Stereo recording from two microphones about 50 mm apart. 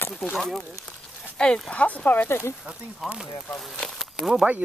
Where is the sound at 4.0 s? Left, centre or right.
Centre.